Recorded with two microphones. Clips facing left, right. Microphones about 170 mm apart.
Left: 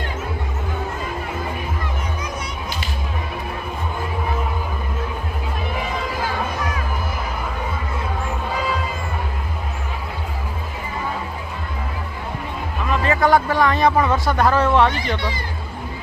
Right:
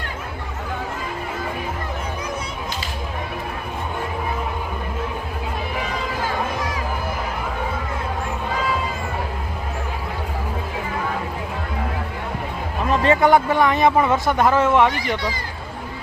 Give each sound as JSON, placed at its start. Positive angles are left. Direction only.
{"t": 12.9, "sound": "a sound", "side_deg": -35}
{"t": 13.2, "sound": "speech", "side_deg": -20}
{"t": 14.9, "sound": "speech", "side_deg": 25}